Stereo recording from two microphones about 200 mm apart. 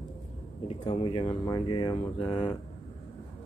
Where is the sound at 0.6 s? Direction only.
30° left (ahead or behind).